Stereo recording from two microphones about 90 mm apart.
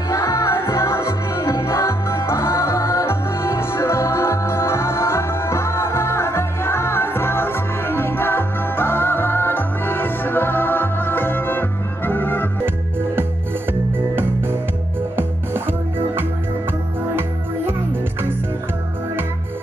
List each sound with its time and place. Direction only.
0.1 s music: 35° left (ahead or behind)
13.9 s music: 25° right (ahead or behind)